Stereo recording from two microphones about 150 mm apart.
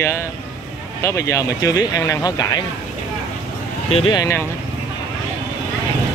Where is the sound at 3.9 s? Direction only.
35° left (ahead or behind).